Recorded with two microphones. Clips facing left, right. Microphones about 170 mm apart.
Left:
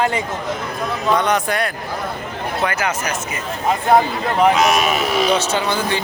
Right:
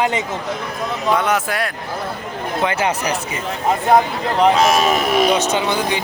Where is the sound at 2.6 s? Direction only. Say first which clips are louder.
Right 3 dB; 30° right (ahead or behind).